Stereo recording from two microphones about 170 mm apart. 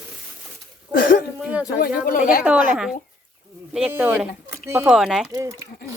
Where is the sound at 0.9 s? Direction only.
55° left (ahead or behind).